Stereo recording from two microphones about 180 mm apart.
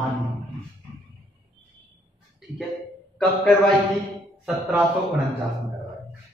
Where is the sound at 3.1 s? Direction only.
5° left (ahead or behind).